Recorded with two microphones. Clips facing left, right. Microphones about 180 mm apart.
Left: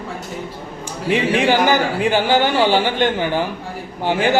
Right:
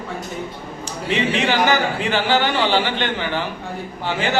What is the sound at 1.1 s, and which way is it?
Speech, 50° left (ahead or behind).